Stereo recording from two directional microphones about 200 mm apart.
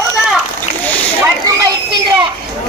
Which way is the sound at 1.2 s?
20° right (ahead or behind).